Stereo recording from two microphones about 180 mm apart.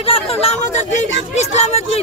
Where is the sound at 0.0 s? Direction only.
30° left (ahead or behind).